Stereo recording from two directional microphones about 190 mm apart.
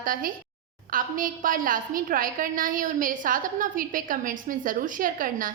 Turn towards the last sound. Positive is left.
turn(degrees=-45)  # may be behind; listen again after turning